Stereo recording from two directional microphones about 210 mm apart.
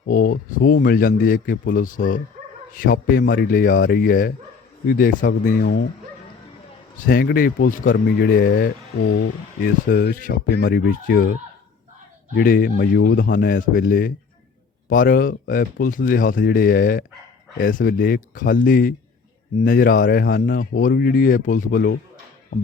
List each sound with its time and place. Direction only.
0.1 s speech: 40° left (ahead or behind)
7.0 s speech: 45° left (ahead or behind)